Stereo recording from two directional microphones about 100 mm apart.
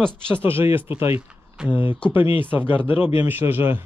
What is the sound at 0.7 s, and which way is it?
Speech, 25° right (ahead or behind).